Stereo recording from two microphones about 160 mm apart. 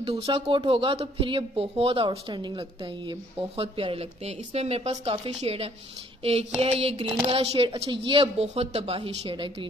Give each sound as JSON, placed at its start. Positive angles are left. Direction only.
{"t": 0.2, "sound": "speech", "side_deg": -30}